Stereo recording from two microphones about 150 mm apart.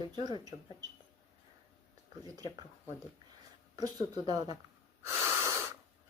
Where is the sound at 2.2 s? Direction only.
25° right (ahead or behind).